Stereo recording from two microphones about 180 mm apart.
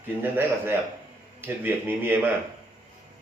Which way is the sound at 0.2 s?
10° right (ahead or behind).